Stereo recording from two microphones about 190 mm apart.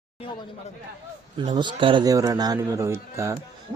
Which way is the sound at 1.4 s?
25° right (ahead or behind).